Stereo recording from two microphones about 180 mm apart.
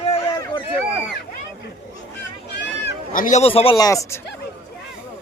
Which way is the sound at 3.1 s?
45° left (ahead or behind).